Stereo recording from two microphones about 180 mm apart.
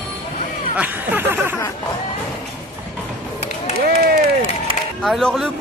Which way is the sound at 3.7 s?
60° right (ahead or behind).